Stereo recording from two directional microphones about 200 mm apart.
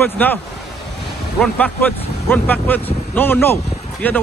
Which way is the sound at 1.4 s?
5° left (ahead or behind).